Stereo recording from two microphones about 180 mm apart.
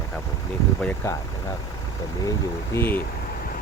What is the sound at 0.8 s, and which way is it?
Speech, 15° left (ahead or behind).